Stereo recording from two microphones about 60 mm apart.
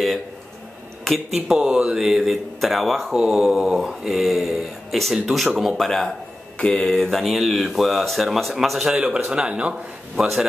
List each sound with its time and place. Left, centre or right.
1.0 s speech: centre
1.6 s speech: centre
3.2 s mantra: centre
3.8 s speech: centre
8.9 s mantra: centre
9.3 s speech: centre
10.1 s speech: centre